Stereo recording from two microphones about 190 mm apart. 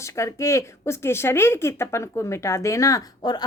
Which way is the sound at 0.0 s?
15° left (ahead or behind).